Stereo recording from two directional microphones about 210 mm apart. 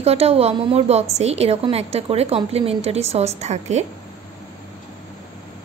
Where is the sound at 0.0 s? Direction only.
30° right (ahead or behind).